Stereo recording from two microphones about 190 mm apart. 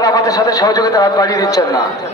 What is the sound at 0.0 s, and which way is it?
A man's voice, 20° left (ahead or behind).